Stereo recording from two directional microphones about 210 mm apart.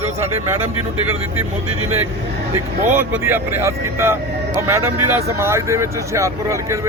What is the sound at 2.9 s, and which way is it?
Speech, 10° right (ahead or behind).